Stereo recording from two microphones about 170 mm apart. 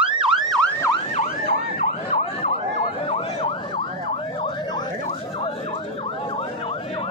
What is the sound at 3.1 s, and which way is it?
Emergency vehicle, 35° left (ahead or behind).